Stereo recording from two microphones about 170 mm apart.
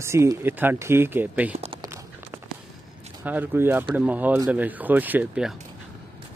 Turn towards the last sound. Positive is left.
turn(degrees=-5)  # may be behind; listen again after turning